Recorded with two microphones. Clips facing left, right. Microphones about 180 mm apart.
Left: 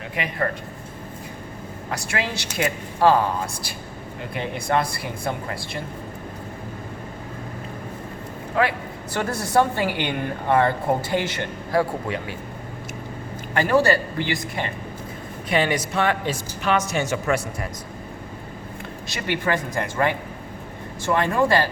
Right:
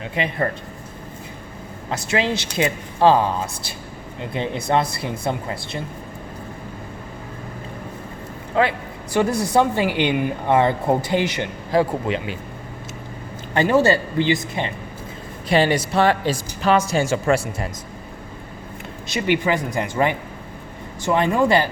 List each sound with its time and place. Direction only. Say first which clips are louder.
0.2 s a woman's voice: right 5 dB; 30° right (ahead or behind)
1.9 s a woman's voice: right 6 dB; 20° right (ahead or behind)
9.1 s speech: right 3 dB; 15° right (ahead or behind)
13.5 s a woman's voice: right 2 dB; 20° right (ahead or behind)
15.4 s speech: right 4 dB; 30° right (ahead or behind)
19.0 s speech: right 5 dB; 20° right (ahead or behind)